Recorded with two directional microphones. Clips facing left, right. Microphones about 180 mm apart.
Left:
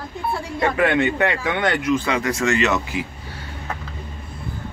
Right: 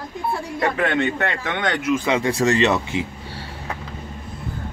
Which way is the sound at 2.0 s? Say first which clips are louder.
Right 2 dB; 25° right (ahead or behind).